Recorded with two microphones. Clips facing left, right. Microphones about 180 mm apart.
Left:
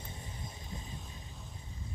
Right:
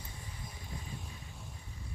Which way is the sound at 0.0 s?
25° left (ahead or behind).